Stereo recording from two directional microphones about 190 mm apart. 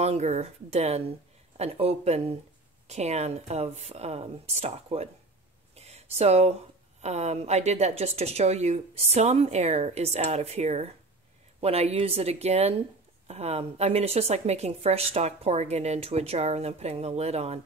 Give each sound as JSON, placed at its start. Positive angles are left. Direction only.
{"t": 0.0, "sound": "speech", "side_deg": -35}
{"t": 5.8, "sound": "a sound", "side_deg": -35}
{"t": 7.0, "sound": "speech", "side_deg": -35}